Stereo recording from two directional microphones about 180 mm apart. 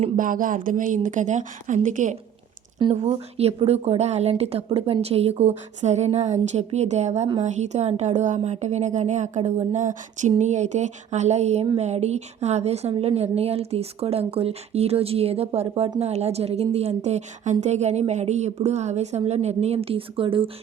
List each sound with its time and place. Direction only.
0.2 s a woman's voice: 50° right (ahead or behind); by 20.5 s 30° right (ahead or behind)